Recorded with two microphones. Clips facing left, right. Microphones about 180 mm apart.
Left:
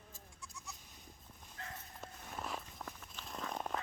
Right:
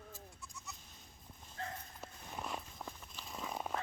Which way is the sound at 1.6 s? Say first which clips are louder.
Right 6 dB; 35° right (ahead or behind).